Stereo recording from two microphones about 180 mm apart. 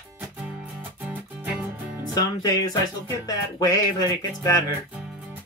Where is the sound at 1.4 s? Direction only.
5° right (ahead or behind).